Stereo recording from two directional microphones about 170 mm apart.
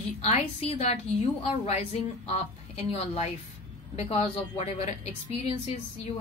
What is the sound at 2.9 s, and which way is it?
Speech, 40° left (ahead or behind).